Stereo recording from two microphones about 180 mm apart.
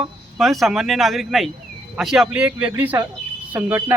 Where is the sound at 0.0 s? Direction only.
Centre (ahead or behind).